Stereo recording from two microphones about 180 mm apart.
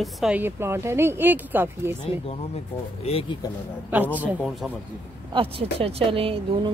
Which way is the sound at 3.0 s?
30° left (ahead or behind).